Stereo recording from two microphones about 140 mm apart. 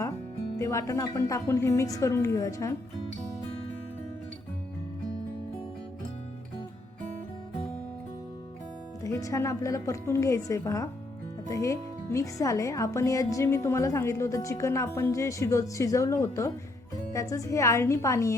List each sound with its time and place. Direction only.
0.6 s speech: 20° left (ahead or behind)
9.0 s speech: 20° left (ahead or behind)